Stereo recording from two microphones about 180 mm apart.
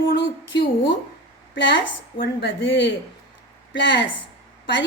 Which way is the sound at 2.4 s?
90° left.